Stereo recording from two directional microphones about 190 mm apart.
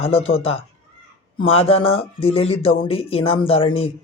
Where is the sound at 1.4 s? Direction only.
30° left (ahead or behind).